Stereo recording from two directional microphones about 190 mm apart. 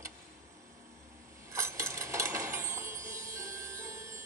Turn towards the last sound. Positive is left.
turn(degrees=-15)  # may be behind; listen again after turning